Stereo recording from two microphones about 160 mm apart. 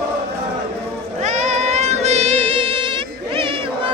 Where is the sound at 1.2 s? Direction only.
45° right (ahead or behind).